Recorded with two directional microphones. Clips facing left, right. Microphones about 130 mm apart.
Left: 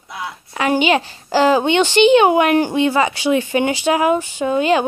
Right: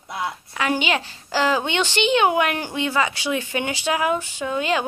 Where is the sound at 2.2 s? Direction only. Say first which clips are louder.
Left 7 dB; 40° left (ahead or behind).